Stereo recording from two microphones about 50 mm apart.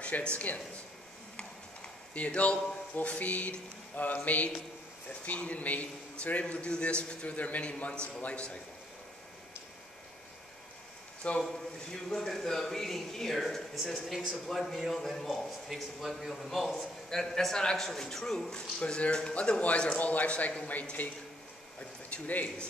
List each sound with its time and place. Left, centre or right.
0.0 s a man's voice: left
11.4 s a man's voice: centre
20.0 s speech: left